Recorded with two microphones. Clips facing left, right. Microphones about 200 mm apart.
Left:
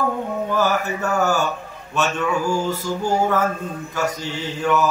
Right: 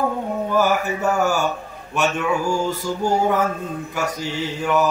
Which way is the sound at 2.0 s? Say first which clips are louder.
Right 1 dB; 15° right (ahead or behind).